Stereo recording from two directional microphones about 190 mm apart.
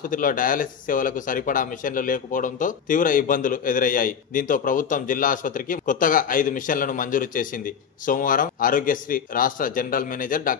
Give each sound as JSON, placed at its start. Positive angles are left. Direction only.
{"t": 0.1, "sound": "speech", "side_deg": 45}